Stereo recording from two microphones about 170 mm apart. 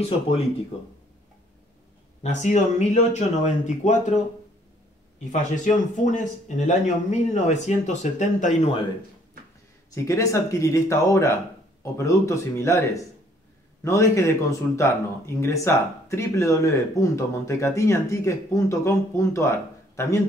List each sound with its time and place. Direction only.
2.2 s a man's voice: 45° left (ahead or behind)
5.2 s a man's voice: 45° left (ahead or behind)
9.9 s speech: 20° left (ahead or behind)